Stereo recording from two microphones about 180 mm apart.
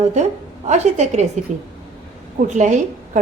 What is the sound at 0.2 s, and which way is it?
A woman's voice, 40° right (ahead or behind).